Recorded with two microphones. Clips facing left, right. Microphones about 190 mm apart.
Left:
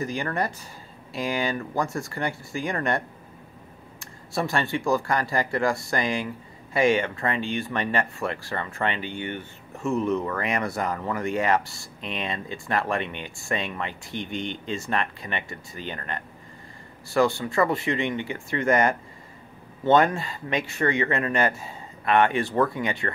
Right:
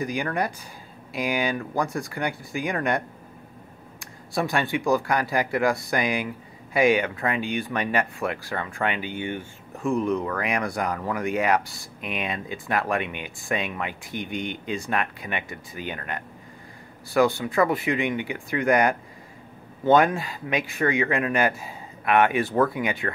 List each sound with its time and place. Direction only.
1.4 s speech: centre (ahead or behind)
4.0 s speech: centre (ahead or behind)
9.8 s speech: centre (ahead or behind)